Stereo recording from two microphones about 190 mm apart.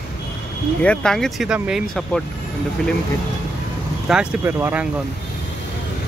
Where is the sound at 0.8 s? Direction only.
5° left (ahead or behind).